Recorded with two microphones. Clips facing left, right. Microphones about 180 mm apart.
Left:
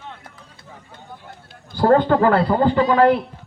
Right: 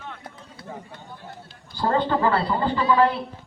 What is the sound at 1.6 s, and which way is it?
A man's voice, 55° left (ahead or behind).